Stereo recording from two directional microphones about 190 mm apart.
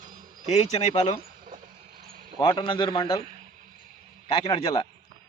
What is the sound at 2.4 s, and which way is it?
Speech, 25° left (ahead or behind).